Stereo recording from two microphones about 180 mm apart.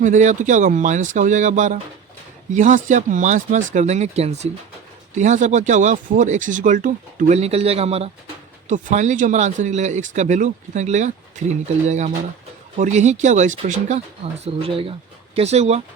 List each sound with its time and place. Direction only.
0.0 s speech: 40° right (ahead or behind)